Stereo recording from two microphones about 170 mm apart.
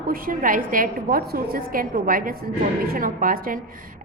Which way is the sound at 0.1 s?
55° right (ahead or behind).